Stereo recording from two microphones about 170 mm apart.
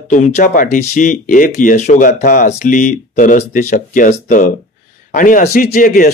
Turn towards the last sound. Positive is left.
turn(degrees=55)  # may be behind; listen again after turning